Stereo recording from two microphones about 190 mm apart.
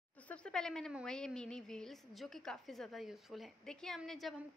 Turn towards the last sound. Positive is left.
turn(degrees=0)  # may be behind; listen again after turning